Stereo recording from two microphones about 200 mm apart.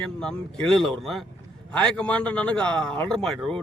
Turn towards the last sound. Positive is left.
turn(degrees=0)  # may be behind; listen again after turning